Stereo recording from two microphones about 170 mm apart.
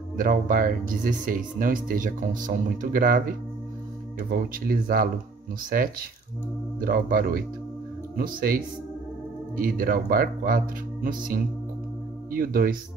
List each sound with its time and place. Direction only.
0.2 s speech: 55° right (ahead or behind)